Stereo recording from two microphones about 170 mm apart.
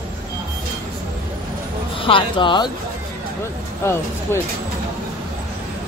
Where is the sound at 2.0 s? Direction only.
30° left (ahead or behind).